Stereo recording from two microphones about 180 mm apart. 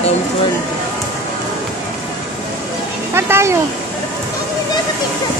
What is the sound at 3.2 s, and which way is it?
Speech, 15° right (ahead or behind).